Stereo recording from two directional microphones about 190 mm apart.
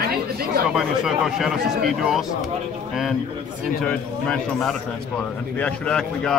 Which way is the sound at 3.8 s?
5° left (ahead or behind).